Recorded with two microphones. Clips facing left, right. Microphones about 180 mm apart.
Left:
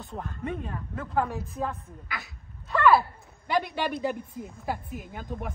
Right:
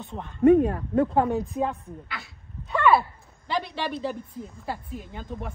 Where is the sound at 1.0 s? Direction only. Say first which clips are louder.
Right 2 dB; 30° right (ahead or behind).